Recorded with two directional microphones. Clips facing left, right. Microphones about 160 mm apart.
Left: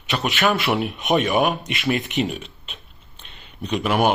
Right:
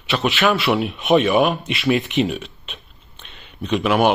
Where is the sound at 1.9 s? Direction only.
40° left (ahead or behind).